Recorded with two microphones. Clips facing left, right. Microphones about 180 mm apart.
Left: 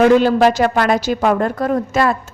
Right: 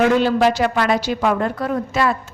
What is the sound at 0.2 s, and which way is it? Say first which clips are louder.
A woman's voice: left 3 dB; 45° left (ahead or behind).